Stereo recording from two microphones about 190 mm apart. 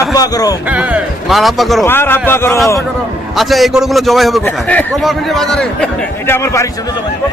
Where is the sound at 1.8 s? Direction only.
10° left (ahead or behind).